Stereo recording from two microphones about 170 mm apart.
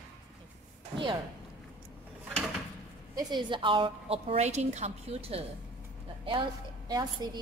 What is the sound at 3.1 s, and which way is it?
A woman's voice, 25° right (ahead or behind).